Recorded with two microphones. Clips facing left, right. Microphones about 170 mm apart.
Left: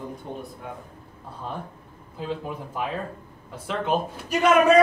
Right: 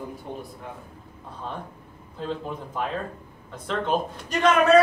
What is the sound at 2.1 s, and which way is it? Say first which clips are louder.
A man's voice: even; 10° left (ahead or behind).